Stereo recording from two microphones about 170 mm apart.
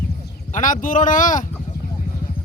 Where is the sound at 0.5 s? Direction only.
50° left (ahead or behind).